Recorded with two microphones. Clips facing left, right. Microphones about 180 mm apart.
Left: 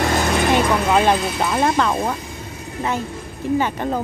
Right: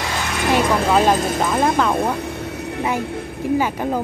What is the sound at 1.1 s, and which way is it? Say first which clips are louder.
Speech: right 2 dB; 45° right (ahead or behind).